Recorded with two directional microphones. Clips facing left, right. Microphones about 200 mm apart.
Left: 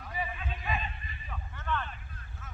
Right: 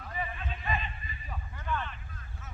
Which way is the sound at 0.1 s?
5° left (ahead or behind).